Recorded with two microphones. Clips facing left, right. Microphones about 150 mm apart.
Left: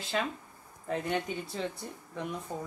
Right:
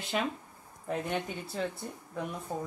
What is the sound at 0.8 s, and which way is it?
Speech, 5° right (ahead or behind).